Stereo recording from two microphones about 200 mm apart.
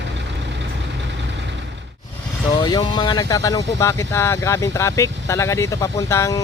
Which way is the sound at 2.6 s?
20° left (ahead or behind).